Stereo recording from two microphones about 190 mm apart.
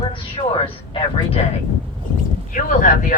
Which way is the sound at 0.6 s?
30° left (ahead or behind).